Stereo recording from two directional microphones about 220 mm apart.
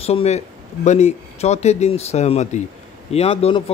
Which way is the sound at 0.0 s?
25° left (ahead or behind).